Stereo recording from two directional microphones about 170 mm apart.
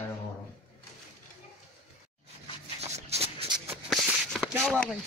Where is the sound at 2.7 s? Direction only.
40° right (ahead or behind).